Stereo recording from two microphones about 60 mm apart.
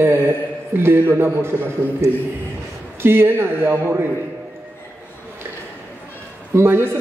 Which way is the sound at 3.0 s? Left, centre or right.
Right.